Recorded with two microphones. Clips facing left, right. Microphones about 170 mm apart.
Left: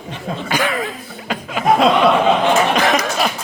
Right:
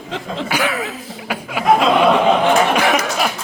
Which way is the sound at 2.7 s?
10° right (ahead or behind).